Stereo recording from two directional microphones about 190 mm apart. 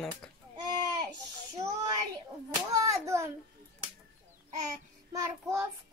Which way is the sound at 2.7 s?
15° right (ahead or behind).